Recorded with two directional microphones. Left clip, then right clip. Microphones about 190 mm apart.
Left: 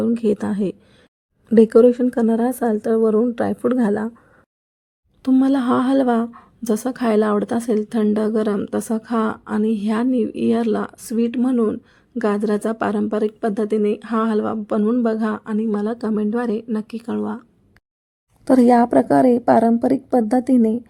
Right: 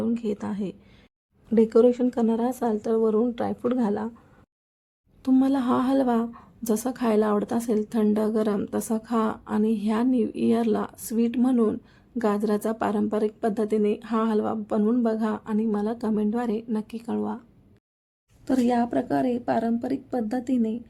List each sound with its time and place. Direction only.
0.0 s a woman's voice: 35° left (ahead or behind)
5.2 s a woman's voice: 20° left (ahead or behind)
18.4 s a woman's voice: 30° left (ahead or behind)